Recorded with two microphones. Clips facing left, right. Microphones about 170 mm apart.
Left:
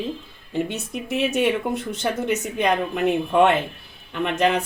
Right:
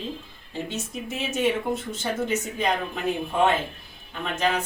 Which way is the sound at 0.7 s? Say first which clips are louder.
Left 4 dB; 65° left (ahead or behind).